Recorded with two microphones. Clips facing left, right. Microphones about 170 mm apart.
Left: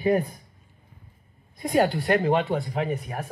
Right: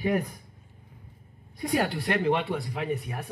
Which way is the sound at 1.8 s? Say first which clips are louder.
Left 5 dB; 40° left (ahead or behind).